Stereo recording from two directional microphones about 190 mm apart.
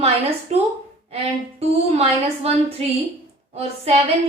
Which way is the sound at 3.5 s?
35° right (ahead or behind).